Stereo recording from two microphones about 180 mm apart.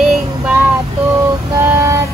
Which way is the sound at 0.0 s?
5° right (ahead or behind).